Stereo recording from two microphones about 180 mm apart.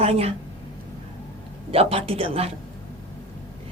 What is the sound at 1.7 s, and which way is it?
Speech, 35° right (ahead or behind).